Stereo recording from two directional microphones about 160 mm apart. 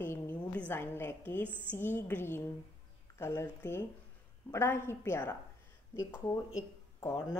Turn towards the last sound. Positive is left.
turn(degrees=15)  # may be behind; listen again after turning